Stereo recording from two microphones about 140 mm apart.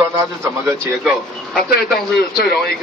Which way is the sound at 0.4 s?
20° right (ahead or behind).